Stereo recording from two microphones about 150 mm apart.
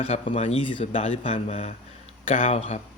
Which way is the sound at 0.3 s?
40° left (ahead or behind).